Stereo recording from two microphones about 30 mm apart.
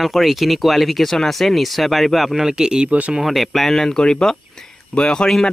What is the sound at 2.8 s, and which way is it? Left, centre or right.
Speech, right.